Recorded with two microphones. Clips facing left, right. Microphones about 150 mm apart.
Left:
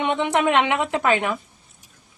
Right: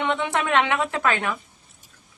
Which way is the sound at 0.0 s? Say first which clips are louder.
Left 4 dB; 20° left (ahead or behind).